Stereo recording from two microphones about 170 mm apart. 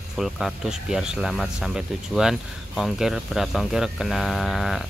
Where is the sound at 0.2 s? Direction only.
Centre (ahead or behind).